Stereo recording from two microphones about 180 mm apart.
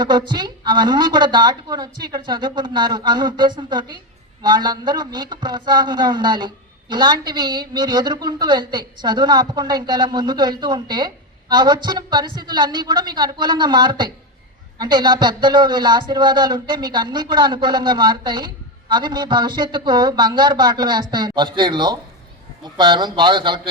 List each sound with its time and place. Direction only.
0.0 s a man's voice: 25° right (ahead or behind)